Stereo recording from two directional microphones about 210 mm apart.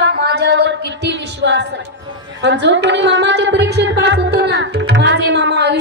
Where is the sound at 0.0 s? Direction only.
50° right (ahead or behind).